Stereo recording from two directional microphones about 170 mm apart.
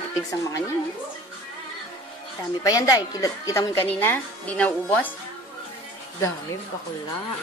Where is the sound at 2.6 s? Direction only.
20° left (ahead or behind).